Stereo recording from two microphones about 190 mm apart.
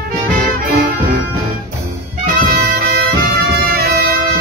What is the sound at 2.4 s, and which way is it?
Music, 50° right (ahead or behind).